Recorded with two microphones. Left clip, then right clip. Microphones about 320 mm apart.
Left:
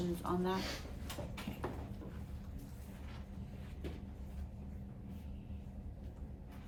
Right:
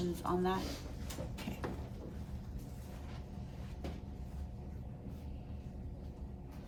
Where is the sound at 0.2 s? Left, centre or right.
Centre.